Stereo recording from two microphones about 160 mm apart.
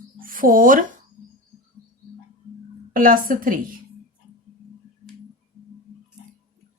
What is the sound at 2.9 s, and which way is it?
Speech, 60° right (ahead or behind).